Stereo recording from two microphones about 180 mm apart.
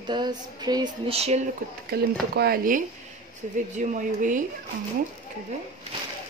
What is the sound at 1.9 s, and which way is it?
Speech, 60° right (ahead or behind).